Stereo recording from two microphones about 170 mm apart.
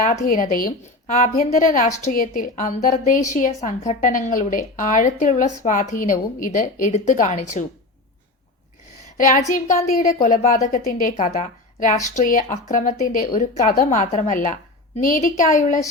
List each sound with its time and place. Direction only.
0.0 s a woman's voice: 45° left (ahead or behind)
9.1 s a woman's voice: 50° left (ahead or behind)